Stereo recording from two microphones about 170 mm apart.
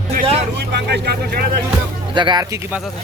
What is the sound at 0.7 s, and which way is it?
Speech, 75° right (ahead or behind).